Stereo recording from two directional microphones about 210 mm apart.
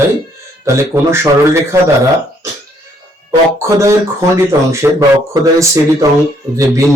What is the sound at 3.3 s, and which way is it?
A man's voice, 15° right (ahead or behind).